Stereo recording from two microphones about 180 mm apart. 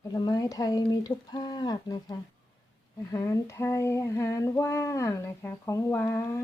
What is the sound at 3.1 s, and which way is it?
Female singing, 15° left (ahead or behind).